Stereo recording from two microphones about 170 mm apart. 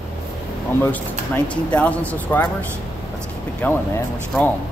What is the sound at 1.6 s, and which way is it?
Speech, 10° left (ahead or behind).